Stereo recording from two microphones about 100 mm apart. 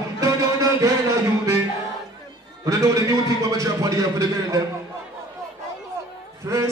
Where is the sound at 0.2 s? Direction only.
30° right (ahead or behind).